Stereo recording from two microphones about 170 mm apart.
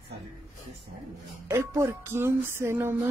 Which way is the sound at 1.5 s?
15° right (ahead or behind).